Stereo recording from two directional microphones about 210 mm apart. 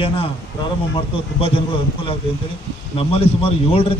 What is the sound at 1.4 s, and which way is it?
A man's voice, 25° left (ahead or behind).